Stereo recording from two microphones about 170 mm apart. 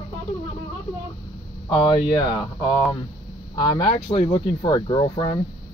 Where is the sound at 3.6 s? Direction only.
30° left (ahead or behind).